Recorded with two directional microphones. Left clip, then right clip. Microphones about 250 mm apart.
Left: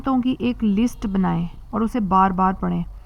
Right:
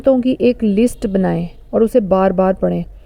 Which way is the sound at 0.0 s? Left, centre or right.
Right.